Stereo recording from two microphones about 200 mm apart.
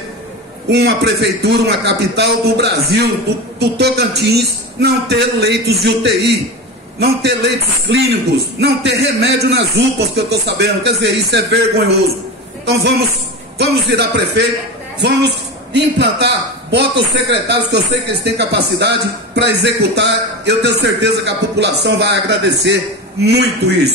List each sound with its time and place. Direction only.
0.7 s a man's voice: 55° right (ahead or behind)